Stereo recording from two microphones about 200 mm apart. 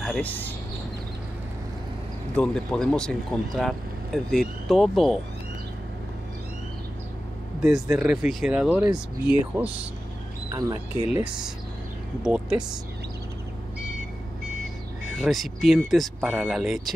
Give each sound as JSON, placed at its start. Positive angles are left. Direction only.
{"t": 0.0, "sound": "speech", "side_deg": 5}
{"t": 2.3, "sound": "speech", "side_deg": 5}
{"t": 7.6, "sound": "speech", "side_deg": 0}
{"t": 12.2, "sound": "speech", "side_deg": -5}
{"t": 15.1, "sound": "speech", "side_deg": 0}